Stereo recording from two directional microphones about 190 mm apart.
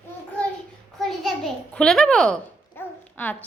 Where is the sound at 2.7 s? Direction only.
10° left (ahead or behind).